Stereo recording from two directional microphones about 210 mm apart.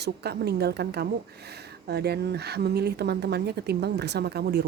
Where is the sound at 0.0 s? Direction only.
50° right (ahead or behind).